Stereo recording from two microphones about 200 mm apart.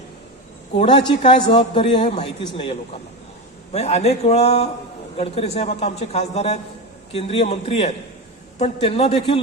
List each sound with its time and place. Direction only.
0.8 s a man's voice: 25° left (ahead or behind)
3.7 s a man's voice: 35° left (ahead or behind)